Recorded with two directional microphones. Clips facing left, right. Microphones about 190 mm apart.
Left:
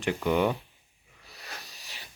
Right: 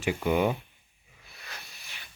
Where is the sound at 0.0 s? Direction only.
10° right (ahead or behind).